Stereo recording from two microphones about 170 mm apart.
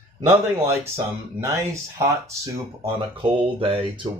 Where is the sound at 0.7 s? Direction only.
15° right (ahead or behind).